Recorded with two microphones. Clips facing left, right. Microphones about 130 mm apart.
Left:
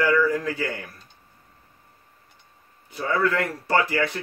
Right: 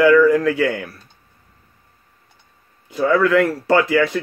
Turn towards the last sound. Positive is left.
turn(degrees=-90)